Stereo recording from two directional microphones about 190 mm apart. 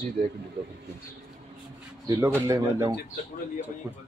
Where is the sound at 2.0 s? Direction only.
15° right (ahead or behind).